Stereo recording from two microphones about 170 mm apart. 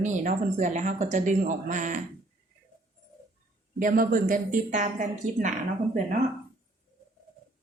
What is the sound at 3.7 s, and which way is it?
Speech, 55° right (ahead or behind).